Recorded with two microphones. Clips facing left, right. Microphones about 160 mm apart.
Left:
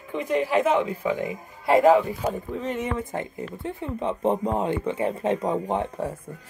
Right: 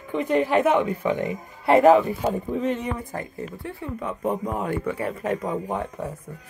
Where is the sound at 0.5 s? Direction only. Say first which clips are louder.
Even; 60° right (ahead or behind).